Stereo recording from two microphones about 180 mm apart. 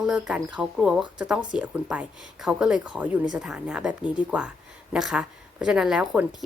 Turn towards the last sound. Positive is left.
turn(degrees=-5)  # may be behind; listen again after turning